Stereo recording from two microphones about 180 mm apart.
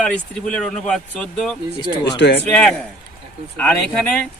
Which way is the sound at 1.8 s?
25° left (ahead or behind).